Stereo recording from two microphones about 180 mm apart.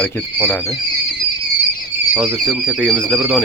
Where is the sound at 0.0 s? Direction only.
5° left (ahead or behind).